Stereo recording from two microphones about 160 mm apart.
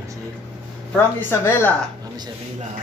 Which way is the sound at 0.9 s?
15° left (ahead or behind).